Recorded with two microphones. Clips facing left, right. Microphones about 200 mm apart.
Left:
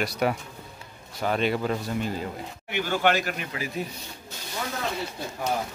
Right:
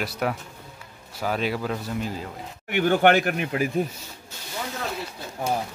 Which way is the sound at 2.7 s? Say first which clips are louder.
Right 6 dB; 60° right (ahead or behind).